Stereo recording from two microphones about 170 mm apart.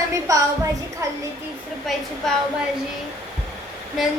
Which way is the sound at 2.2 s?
5° left (ahead or behind).